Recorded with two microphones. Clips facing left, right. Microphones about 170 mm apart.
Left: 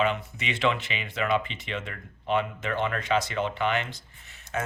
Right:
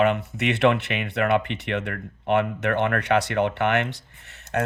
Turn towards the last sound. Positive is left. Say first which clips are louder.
# right 6 dB
turn(degrees=-70)  # may be behind; listen again after turning